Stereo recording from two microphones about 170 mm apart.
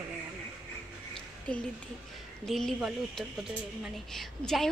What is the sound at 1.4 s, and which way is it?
A woman's voice, 5° left (ahead or behind).